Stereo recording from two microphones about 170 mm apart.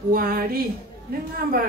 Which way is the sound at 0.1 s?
60° right (ahead or behind).